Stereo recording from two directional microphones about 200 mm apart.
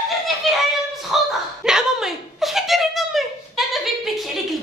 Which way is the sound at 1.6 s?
Centre (ahead or behind).